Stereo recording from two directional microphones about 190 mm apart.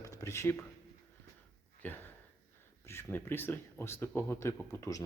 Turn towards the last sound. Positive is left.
turn(degrees=15)  # may be behind; listen again after turning